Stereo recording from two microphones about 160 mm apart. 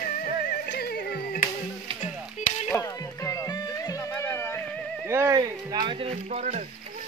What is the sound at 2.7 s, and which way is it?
Music, 20° left (ahead or behind).